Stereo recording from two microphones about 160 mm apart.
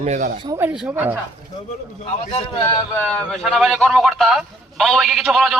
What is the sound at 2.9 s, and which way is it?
A man's voice, 5° left (ahead or behind).